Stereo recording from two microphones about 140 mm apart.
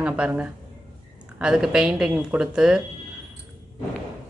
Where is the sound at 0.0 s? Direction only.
10° right (ahead or behind).